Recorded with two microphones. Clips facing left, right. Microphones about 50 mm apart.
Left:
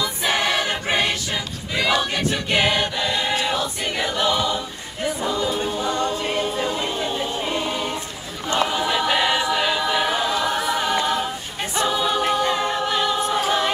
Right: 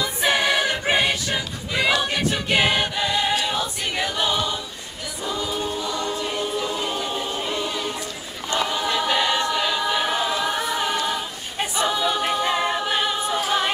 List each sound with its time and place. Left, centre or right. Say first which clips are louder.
0.0 s choir: right 1 dB; centre
5.4 s choir: left 3 dB; left
6.4 s choir: left 2 dB; left
7.1 s choir: left 2 dB; centre
7.5 s choir: left 2 dB; left
10.2 s a capella: left 2 dB; centre